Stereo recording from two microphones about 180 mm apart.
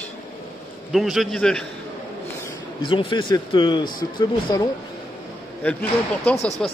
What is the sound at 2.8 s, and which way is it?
A man's voice, 30° left (ahead or behind).